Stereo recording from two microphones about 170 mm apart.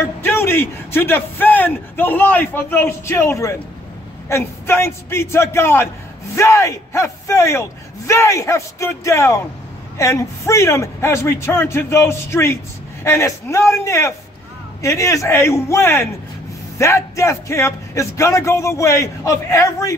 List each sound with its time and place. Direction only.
0.0 s a man's voice: 15° left (ahead or behind)